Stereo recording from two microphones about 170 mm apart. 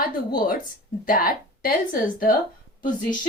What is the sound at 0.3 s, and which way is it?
Speech, 60° left (ahead or behind).